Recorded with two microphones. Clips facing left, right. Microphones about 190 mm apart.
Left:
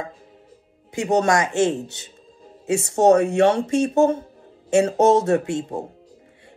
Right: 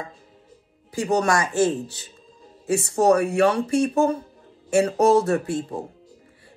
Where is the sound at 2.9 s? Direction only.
30° left (ahead or behind).